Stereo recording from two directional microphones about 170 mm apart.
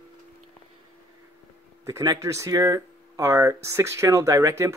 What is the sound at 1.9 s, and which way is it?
Speech, 20° right (ahead or behind).